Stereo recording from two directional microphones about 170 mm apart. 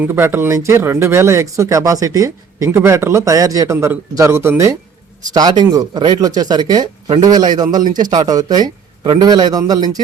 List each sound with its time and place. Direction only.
0.0 s speech: 15° right (ahead or behind)
7.8 s speech: 50° right (ahead or behind)
8.0 s speech: 25° right (ahead or behind)